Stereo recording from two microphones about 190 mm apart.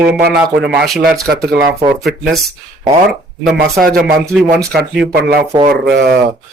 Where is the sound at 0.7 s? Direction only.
Centre (ahead or behind).